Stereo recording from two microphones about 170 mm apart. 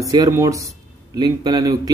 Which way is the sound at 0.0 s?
20° right (ahead or behind).